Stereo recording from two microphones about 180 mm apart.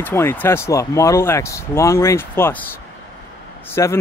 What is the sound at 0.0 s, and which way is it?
Speech, 15° left (ahead or behind).